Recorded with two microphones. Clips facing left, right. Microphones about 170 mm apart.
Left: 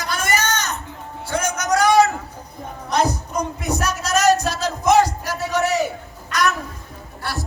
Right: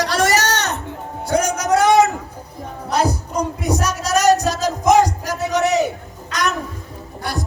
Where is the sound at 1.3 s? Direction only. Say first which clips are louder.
Right 4 dB; 35° right (ahead or behind).